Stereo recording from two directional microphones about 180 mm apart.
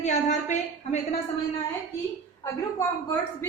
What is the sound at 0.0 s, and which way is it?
Speech, 40° left (ahead or behind).